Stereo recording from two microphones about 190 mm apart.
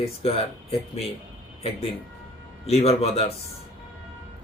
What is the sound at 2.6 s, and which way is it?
Speech, 35° left (ahead or behind).